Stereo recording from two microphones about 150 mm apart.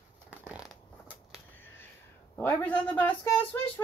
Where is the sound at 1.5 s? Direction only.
15° left (ahead or behind).